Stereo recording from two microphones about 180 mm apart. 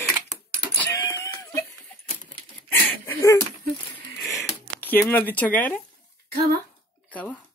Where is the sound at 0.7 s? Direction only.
15° left (ahead or behind).